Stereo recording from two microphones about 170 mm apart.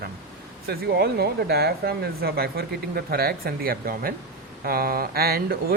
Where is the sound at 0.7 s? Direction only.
70° right (ahead or behind).